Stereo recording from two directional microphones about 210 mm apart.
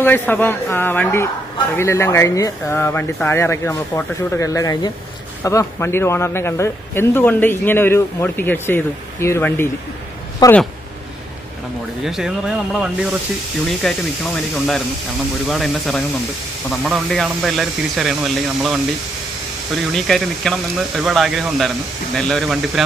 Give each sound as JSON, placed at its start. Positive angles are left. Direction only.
{"t": 0.0, "sound": "a man's voice", "side_deg": 10}
{"t": 12.0, "sound": "speech", "side_deg": 0}